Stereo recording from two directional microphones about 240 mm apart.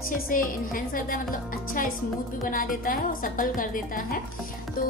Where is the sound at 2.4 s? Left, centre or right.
Left.